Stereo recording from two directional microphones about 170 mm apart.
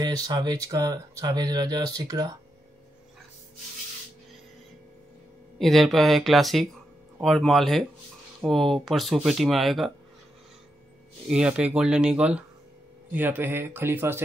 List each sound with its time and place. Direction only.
0.0 s speech: 25° right (ahead or behind)
5.6 s speech: centre (ahead or behind)
11.2 s speech: 5° right (ahead or behind)